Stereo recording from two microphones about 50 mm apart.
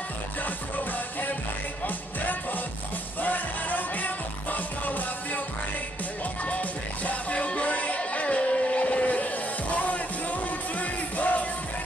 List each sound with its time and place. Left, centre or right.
3.2 s music: left
6.4 s music: left